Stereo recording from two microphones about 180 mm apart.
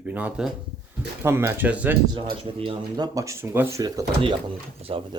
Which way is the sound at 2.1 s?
30° right (ahead or behind).